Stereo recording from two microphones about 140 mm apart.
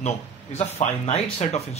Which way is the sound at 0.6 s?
50° left (ahead or behind).